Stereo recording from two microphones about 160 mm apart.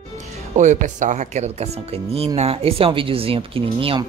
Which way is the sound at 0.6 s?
50° right (ahead or behind).